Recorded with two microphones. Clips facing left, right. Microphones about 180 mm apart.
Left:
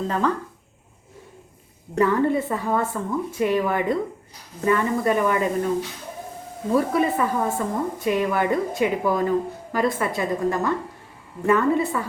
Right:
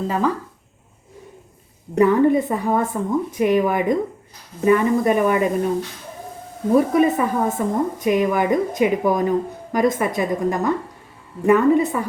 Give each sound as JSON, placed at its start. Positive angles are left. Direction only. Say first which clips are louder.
{"t": 0.1, "sound": "a woman's voice", "louder": "right 2 dB", "side_deg": -10}
{"t": 2.0, "sound": "a woman's voice", "louder": "right 5 dB", "side_deg": -15}
{"t": 6.7, "sound": "a woman's voice", "louder": "right 5 dB", "side_deg": -20}